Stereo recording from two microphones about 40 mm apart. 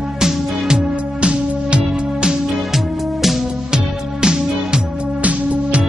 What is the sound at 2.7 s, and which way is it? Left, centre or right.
Music, centre.